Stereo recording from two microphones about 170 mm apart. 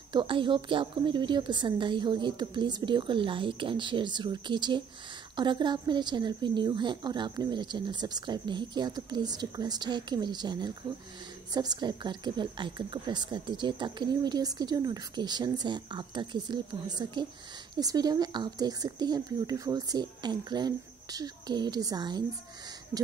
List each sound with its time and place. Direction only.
0.1 s a woman's voice: 30° right (ahead or behind)